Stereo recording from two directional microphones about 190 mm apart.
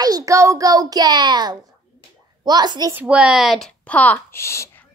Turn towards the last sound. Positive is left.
turn(degrees=15)  # may be behind; listen again after turning